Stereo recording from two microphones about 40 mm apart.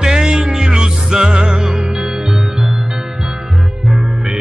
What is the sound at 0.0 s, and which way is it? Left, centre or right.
Music, centre.